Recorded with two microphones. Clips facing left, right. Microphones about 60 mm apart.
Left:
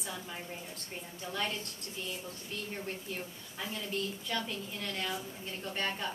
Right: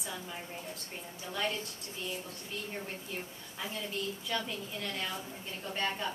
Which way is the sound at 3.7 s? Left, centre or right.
Centre.